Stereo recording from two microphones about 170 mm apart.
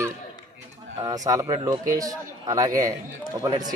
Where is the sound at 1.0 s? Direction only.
20° right (ahead or behind).